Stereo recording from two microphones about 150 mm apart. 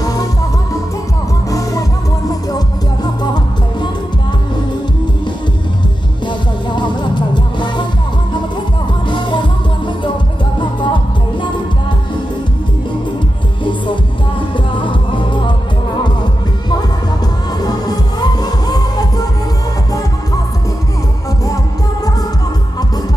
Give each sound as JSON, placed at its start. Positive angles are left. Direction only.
{"t": 0.0, "sound": "music", "side_deg": 25}
{"t": 1.5, "sound": "music", "side_deg": 20}
{"t": 6.2, "sound": "music", "side_deg": 30}
{"t": 10.6, "sound": "music", "side_deg": 30}
{"t": 14.8, "sound": "music", "side_deg": 30}
{"t": 17.6, "sound": "music", "side_deg": 25}